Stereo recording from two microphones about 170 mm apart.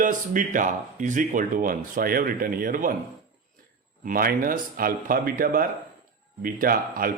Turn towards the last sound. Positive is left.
turn(degrees=-55)  # may be behind; listen again after turning